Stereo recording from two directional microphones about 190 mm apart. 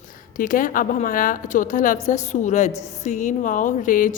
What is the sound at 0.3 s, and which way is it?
A woman's voice, 45° left (ahead or behind).